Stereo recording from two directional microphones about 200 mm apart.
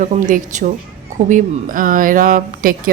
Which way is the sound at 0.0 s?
40° right (ahead or behind).